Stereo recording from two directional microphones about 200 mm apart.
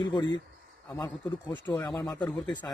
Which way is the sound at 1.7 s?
20° left (ahead or behind).